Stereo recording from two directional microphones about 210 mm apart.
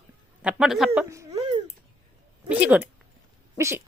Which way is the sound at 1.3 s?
25° right (ahead or behind).